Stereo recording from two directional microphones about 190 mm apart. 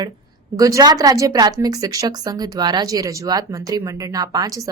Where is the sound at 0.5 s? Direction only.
20° right (ahead or behind).